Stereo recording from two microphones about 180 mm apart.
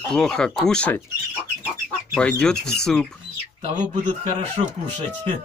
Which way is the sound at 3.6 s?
30° right (ahead or behind).